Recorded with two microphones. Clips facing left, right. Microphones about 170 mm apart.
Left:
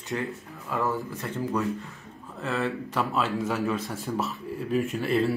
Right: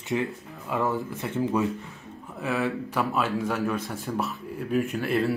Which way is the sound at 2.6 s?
Centre (ahead or behind).